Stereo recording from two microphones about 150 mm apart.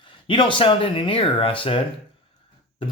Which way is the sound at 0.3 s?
35° left (ahead or behind).